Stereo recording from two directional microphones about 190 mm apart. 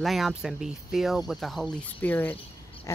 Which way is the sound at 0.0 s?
Centre (ahead or behind).